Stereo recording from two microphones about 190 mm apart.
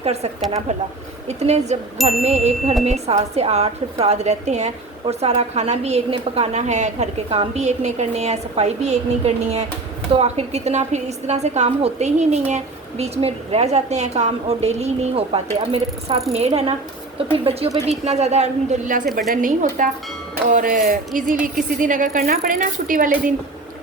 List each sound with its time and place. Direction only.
0.0 s speech: 35° right (ahead or behind)
1.3 s a woman's voice: 35° right (ahead or behind)